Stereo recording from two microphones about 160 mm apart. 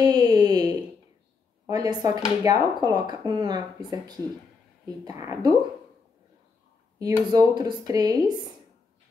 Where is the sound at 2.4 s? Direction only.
25° right (ahead or behind).